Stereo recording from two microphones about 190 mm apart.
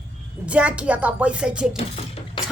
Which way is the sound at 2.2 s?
30° left (ahead or behind).